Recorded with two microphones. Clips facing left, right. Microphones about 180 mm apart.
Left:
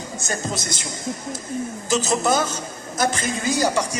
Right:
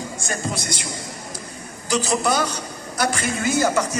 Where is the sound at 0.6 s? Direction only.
45° left (ahead or behind).